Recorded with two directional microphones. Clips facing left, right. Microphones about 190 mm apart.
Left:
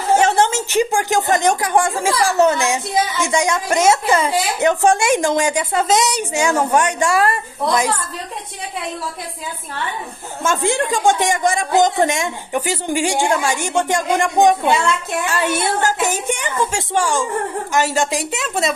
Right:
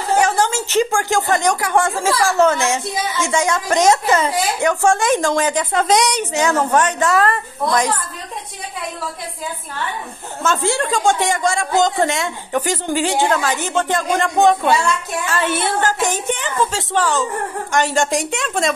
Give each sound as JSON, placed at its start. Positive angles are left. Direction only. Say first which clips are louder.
{"t": 0.2, "sound": "speech", "louder": "left 2 dB", "side_deg": 25}
{"t": 4.3, "sound": "speech", "louder": "left 1 dB", "side_deg": 20}
{"t": 10.4, "sound": "a woman's voice", "louder": "even", "side_deg": 15}